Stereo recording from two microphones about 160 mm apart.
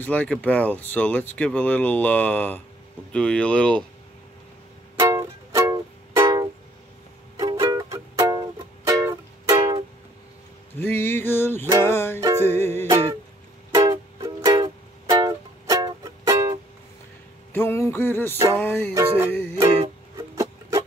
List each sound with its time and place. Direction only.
0.0 s speech: 10° left (ahead or behind)
4.9 s music: 20° right (ahead or behind)
10.8 s a sound: 10° left (ahead or behind)
11.8 s music: 15° left (ahead or behind)
13.7 s music: 25° right (ahead or behind)
17.5 s music: 15° left (ahead or behind)
19.0 s music: 40° right (ahead or behind)
20.2 s music: 20° right (ahead or behind)